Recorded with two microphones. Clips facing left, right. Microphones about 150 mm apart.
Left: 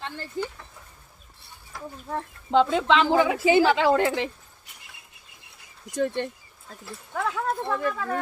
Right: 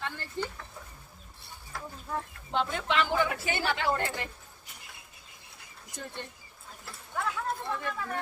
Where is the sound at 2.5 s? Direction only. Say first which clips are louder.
Left 11 dB; 90° left.